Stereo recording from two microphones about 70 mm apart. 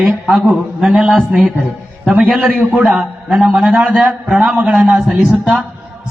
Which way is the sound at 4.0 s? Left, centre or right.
Centre.